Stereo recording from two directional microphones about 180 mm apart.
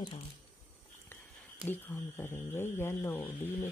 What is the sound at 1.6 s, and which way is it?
Speech, 15° left (ahead or behind).